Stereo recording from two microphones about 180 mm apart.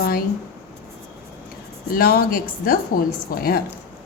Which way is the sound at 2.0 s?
55° left (ahead or behind).